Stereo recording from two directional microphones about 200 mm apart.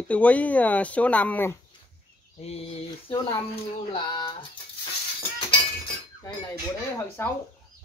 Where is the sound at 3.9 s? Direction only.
25° left (ahead or behind).